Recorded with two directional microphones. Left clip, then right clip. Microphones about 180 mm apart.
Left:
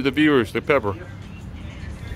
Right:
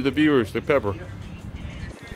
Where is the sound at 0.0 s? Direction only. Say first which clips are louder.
Left 2 dB; centre (ahead or behind).